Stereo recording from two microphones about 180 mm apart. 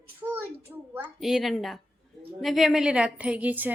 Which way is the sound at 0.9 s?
5° right (ahead or behind).